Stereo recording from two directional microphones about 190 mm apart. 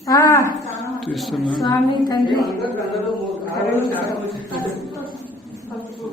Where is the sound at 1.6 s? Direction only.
20° left (ahead or behind).